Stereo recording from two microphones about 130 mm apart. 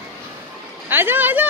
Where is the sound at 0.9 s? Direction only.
15° right (ahead or behind).